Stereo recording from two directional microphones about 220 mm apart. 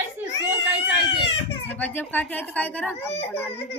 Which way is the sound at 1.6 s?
10° left (ahead or behind).